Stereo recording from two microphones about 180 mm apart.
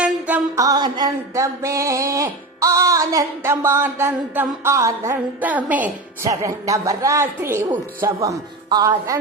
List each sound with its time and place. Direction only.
0.0 s music: 10° right (ahead or behind)
7.7 s speech: 20° right (ahead or behind)